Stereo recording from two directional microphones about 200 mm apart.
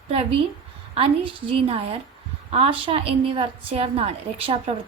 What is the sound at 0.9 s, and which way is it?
A woman's voice, 25° right (ahead or behind).